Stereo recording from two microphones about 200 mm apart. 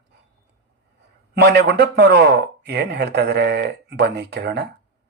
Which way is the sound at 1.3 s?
55° right (ahead or behind).